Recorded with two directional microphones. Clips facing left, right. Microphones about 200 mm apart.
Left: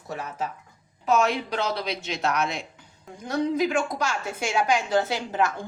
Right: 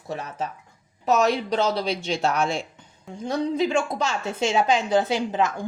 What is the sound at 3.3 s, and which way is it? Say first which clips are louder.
A woman's voice: right 1 dB; 30° right (ahead or behind).